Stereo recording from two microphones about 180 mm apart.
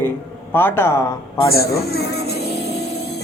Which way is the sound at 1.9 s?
65° left (ahead or behind).